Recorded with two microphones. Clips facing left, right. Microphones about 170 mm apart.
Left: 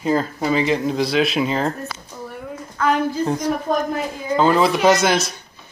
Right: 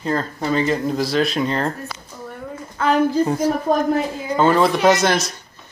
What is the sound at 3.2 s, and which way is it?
A woman's voice, 10° right (ahead or behind).